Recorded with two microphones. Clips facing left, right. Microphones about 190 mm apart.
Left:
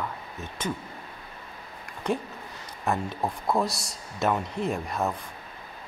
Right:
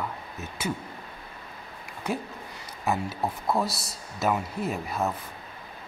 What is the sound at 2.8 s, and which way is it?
Speech, 5° right (ahead or behind).